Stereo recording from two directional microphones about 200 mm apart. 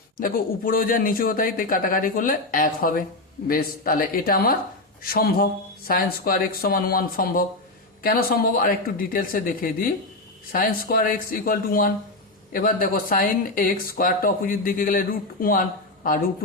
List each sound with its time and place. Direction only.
0.2 s speech: 45° left (ahead or behind)